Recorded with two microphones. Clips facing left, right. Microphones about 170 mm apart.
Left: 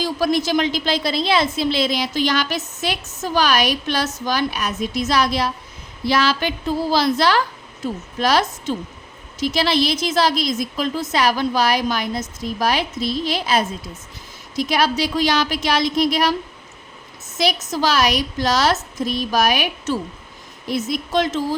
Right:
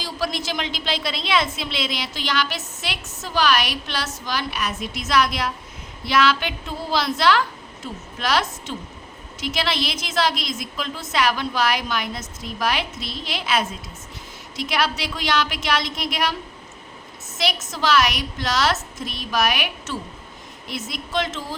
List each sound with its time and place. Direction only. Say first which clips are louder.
0.0 s a woman's voice: left 8 dB; 45° left (ahead or behind)
17.3 s a woman's voice: left 6 dB; 40° left (ahead or behind)